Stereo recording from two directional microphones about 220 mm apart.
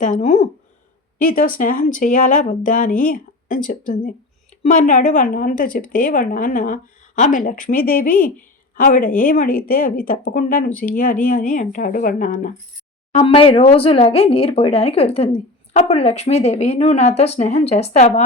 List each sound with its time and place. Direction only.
0.0 s a woman's voice: 30° left (ahead or behind)
1.2 s speech: 40° left (ahead or behind)
13.1 s a woman's voice: 25° left (ahead or behind)